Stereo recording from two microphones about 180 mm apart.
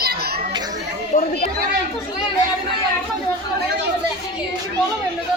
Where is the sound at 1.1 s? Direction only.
45° left (ahead or behind).